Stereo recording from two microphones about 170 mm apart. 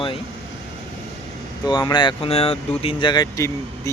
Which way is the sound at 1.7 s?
25° left (ahead or behind).